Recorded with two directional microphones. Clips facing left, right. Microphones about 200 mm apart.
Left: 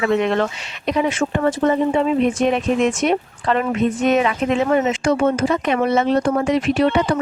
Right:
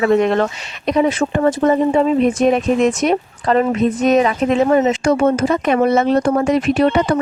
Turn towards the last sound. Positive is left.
turn(degrees=-45)  # may be behind; listen again after turning